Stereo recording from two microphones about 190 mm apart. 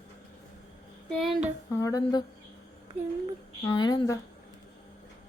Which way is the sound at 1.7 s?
15° left (ahead or behind).